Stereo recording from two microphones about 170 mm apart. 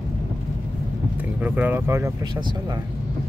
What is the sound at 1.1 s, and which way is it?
Speech, 10° right (ahead or behind).